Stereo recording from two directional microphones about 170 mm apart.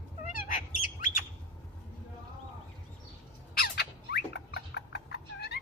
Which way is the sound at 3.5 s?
65° left (ahead or behind).